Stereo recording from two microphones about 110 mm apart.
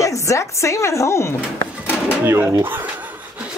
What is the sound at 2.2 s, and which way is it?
Speech, 20° right (ahead or behind).